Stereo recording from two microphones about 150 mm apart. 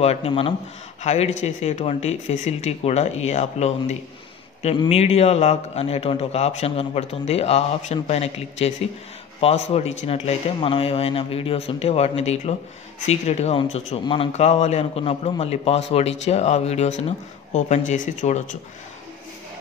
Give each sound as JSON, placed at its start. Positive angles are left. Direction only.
{"t": 0.0, "sound": "a man's voice", "side_deg": 45}